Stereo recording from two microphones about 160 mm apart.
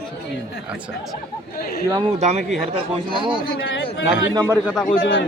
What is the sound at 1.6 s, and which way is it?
Speech, 70° left (ahead or behind).